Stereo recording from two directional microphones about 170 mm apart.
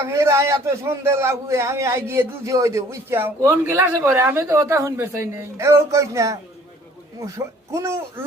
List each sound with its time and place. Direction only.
0.1 s a man's voice: 15° right (ahead or behind)